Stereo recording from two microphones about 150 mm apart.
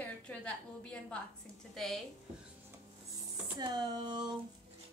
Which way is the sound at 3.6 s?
30° right (ahead or behind).